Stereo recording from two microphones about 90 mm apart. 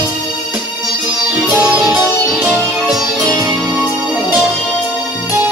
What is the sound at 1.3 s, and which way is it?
Music, 30° right (ahead or behind).